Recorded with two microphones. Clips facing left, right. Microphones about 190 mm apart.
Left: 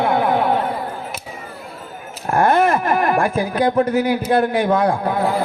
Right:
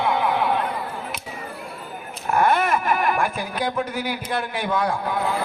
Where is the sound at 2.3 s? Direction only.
50° left (ahead or behind).